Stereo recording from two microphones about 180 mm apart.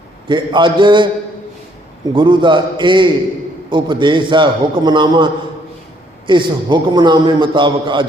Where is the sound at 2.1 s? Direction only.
25° right (ahead or behind).